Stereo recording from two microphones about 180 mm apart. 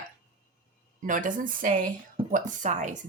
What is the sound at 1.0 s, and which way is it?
A woman's voice, 45° right (ahead or behind).